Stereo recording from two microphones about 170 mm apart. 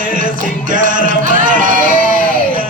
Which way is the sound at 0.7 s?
50° right (ahead or behind).